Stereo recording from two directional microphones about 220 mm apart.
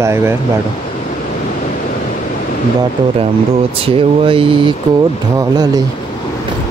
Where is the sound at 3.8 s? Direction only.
25° right (ahead or behind).